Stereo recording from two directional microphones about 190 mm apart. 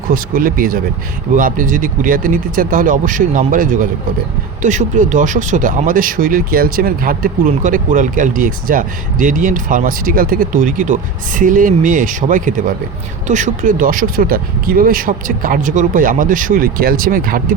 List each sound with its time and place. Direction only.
0.1 s speech: 50° right (ahead or behind)